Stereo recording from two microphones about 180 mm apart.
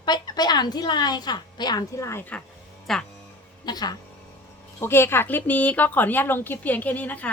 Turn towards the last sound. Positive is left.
turn(degrees=10)  # may be behind; listen again after turning